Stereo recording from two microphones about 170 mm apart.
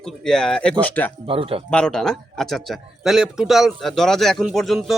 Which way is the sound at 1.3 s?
35° right (ahead or behind).